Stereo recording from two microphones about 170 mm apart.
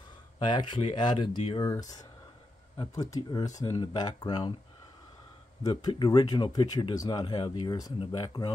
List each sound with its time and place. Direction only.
0.5 s speech: 25° left (ahead or behind)
2.8 s speech: 20° left (ahead or behind)
5.6 s speech: 25° left (ahead or behind)